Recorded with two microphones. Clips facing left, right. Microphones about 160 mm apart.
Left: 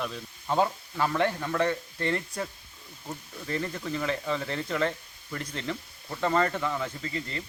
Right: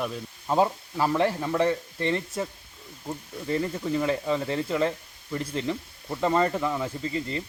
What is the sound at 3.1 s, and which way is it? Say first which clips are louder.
Speech: right 5 dB; 10° right (ahead or behind).